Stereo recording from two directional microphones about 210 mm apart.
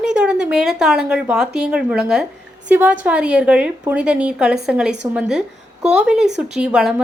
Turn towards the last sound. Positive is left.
turn(degrees=-5)  # may be behind; listen again after turning